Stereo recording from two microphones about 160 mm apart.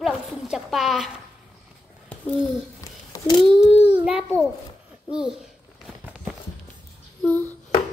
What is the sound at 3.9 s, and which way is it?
Speech, 5° right (ahead or behind).